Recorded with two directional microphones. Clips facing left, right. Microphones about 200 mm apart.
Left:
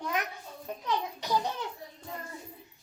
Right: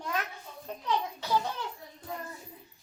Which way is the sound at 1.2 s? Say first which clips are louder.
Even; 15° left (ahead or behind).